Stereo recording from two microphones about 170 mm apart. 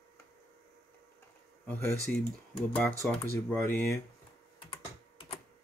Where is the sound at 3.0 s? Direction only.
10° left (ahead or behind).